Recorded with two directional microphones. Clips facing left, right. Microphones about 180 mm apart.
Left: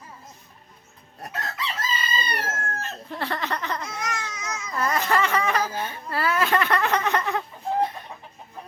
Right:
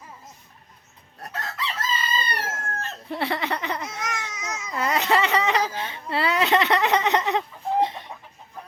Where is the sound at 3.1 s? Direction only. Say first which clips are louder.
Right 3 dB; 15° right (ahead or behind).